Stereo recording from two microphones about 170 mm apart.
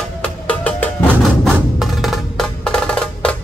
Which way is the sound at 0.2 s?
5° left (ahead or behind).